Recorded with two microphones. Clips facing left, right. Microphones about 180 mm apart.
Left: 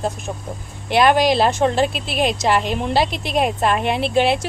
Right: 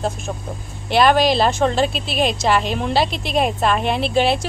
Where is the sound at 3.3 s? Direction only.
5° left (ahead or behind).